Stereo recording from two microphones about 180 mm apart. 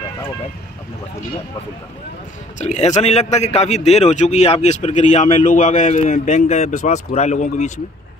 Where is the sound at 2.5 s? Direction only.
40° left (ahead or behind).